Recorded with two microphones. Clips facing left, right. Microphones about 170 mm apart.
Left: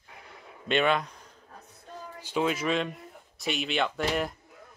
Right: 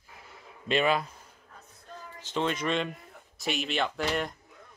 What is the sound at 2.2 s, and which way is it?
Speech, 10° left (ahead or behind).